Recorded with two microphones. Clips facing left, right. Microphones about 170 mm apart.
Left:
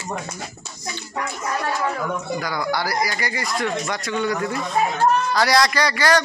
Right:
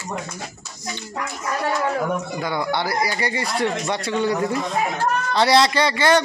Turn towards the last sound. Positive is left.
turn(degrees=-25)  # may be behind; listen again after turning